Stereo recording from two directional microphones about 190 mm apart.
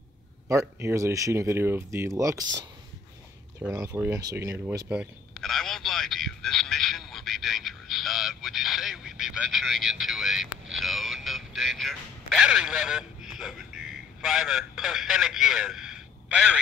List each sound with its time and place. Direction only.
0.5 s speech: 15° right (ahead or behind)
3.6 s speech: 10° right (ahead or behind)
4.4 s a sound: 15° right (ahead or behind)